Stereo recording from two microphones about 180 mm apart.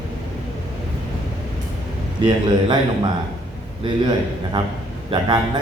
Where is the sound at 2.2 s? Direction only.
25° right (ahead or behind).